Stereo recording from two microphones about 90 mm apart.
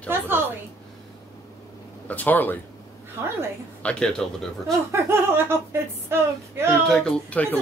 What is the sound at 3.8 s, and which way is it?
Speech, 10° left (ahead or behind).